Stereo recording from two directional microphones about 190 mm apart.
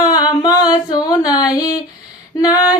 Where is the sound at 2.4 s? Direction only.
20° left (ahead or behind).